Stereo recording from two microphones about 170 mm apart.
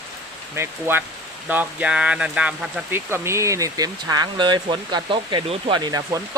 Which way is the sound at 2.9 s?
15° right (ahead or behind).